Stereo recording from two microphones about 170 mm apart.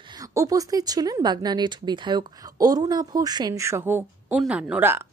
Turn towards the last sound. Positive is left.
turn(degrees=-15)  # may be behind; listen again after turning